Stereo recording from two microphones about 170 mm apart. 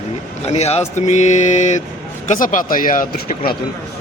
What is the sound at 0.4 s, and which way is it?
Speech, 40° left (ahead or behind).